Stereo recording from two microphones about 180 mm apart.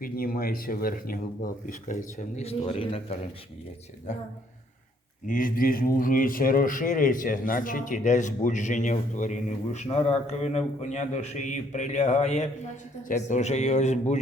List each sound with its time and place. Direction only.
0.0 s a man's voice: 55° left (ahead or behind); by 3.2 s 30° left (ahead or behind)
5.2 s a man's voice: 50° left (ahead or behind)